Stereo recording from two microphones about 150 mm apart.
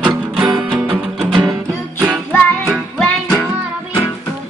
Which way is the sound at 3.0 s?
5° left (ahead or behind).